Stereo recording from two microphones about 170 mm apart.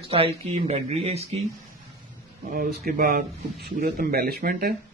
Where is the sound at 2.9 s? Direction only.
55° right (ahead or behind).